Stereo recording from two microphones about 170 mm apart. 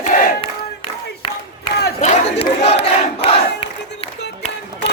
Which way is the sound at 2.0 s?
40° left (ahead or behind).